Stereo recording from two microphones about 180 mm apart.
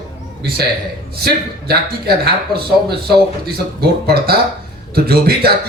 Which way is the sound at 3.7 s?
60° right (ahead or behind).